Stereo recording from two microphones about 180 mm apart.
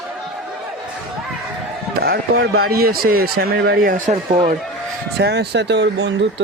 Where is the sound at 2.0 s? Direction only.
60° right (ahead or behind); by 4.2 s 45° right (ahead or behind).